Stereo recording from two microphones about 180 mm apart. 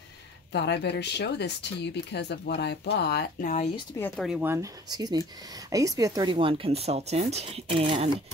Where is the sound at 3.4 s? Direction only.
40° left (ahead or behind).